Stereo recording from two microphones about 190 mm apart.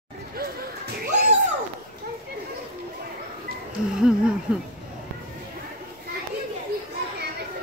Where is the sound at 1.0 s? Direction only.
55° right (ahead or behind).